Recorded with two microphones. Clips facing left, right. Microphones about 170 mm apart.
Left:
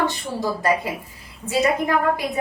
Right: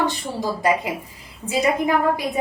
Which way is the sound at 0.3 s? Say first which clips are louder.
Even; 20° right (ahead or behind).